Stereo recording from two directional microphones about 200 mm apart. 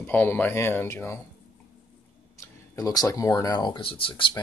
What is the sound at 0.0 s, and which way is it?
Speech, 10° left (ahead or behind).